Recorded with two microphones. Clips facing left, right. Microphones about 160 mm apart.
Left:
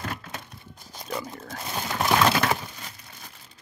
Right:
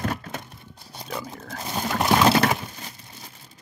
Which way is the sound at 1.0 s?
Centre (ahead or behind).